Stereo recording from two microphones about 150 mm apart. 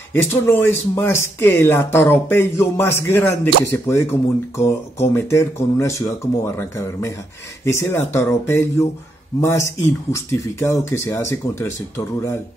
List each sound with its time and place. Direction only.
0.1 s speech: 15° left (ahead or behind)